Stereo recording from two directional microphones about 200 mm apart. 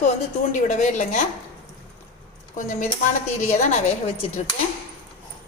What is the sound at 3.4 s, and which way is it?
A woman's voice, 35° left (ahead or behind).